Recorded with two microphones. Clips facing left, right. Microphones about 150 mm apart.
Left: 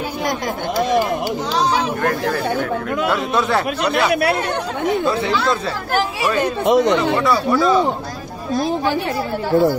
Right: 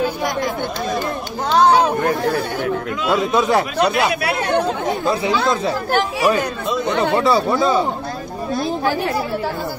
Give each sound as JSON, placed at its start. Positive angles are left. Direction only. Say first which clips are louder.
{"t": 1.5, "sound": "a sound", "louder": "right 7 dB", "side_deg": -55}
{"t": 3.3, "sound": "speech", "louder": "right 2 dB", "side_deg": -15}
{"t": 4.1, "sound": "speech", "louder": "left 4 dB", "side_deg": 55}
{"t": 5.9, "sound": "speech", "louder": "even", "side_deg": 0}
{"t": 6.6, "sound": "speech", "louder": "left 8 dB", "side_deg": 75}
{"t": 7.2, "sound": "speech", "louder": "even", "side_deg": -25}